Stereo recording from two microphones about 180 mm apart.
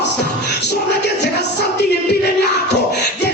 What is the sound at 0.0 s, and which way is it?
Music, 70° left (ahead or behind).